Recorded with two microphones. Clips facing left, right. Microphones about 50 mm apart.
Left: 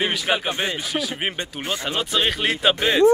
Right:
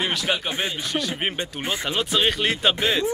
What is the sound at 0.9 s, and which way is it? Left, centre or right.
A man's voice, centre.